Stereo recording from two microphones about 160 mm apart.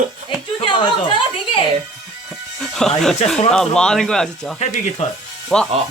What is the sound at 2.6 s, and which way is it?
Music, 5° left (ahead or behind).